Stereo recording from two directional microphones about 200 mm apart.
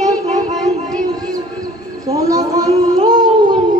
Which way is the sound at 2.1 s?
15° right (ahead or behind).